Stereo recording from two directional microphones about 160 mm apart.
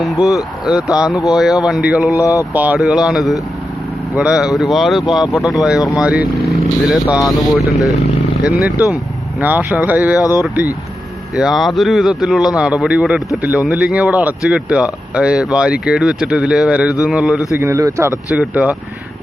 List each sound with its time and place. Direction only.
0.0 s speech: centre (ahead or behind)
2.1 s speech: 20° left (ahead or behind)
2.5 s speech: 10° right (ahead or behind)
5.8 s speech: 25° left (ahead or behind)
6.0 s speech: 5° right (ahead or behind)
11.3 s speech: centre (ahead or behind)
17.6 s speech: 20° right (ahead or behind)
18.3 s speech: 5° right (ahead or behind)